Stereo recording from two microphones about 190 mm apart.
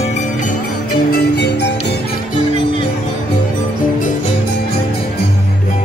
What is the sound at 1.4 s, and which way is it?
Music, 65° left (ahead or behind).